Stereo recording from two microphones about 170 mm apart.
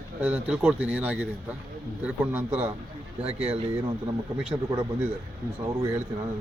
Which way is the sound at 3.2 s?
35° right (ahead or behind).